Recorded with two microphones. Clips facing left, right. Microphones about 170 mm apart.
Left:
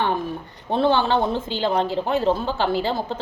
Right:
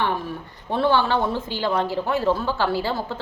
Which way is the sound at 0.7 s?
20° left (ahead or behind).